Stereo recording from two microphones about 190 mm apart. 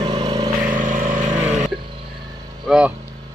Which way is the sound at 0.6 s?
45° right (ahead or behind).